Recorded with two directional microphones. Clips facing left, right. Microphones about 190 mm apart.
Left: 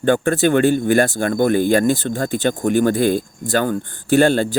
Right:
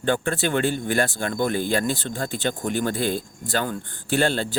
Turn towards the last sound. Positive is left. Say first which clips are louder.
# left 8 dB
turn(degrees=45)  # may be behind; listen again after turning